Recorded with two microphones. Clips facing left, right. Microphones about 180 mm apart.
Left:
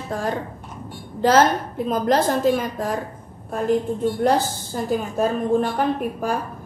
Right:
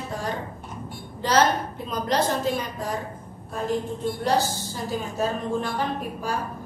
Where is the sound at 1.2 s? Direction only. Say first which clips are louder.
Left 5 dB; 50° left (ahead or behind).